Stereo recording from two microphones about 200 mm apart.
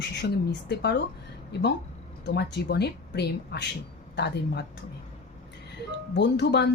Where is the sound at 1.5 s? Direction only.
55° left (ahead or behind).